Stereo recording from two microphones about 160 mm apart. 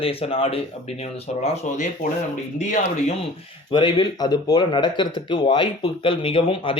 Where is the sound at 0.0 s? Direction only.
35° left (ahead or behind).